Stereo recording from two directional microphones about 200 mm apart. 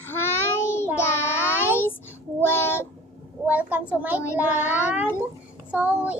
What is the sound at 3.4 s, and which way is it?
A child's voice, 10° right (ahead or behind).